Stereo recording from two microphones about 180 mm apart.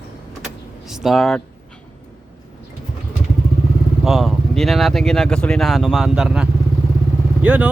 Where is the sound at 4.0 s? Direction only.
Centre (ahead or behind).